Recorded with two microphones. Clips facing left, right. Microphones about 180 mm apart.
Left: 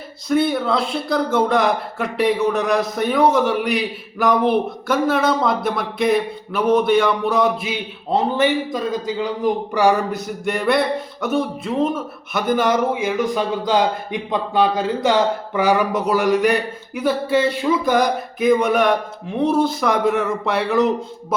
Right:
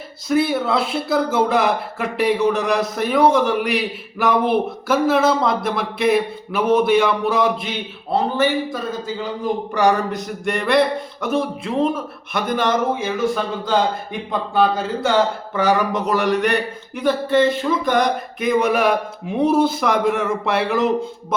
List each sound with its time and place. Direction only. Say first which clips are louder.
0.3 s speech: even; 5° right (ahead or behind)
8.1 s a man's voice: left 1 dB; 15° left (ahead or behind); by 21.3 s centre (ahead or behind)